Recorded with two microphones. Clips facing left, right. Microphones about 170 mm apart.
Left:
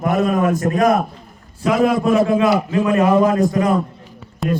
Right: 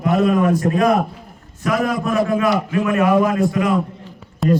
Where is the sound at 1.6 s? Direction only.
25° left (ahead or behind).